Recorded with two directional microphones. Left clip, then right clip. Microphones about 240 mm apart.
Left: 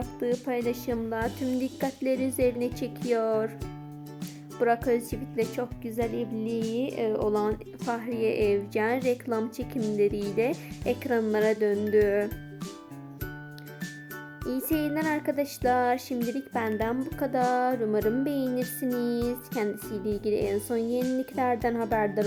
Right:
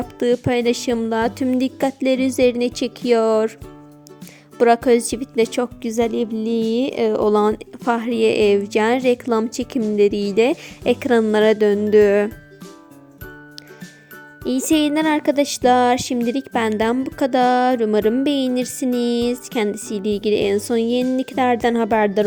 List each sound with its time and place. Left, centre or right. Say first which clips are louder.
0.4 s a woman's voice: right 11 dB; right
4.5 s a woman's voice: right 11 dB; right
10.8 s a woman's voice: right 10 dB; right
14.4 s a woman's voice: right 11 dB; right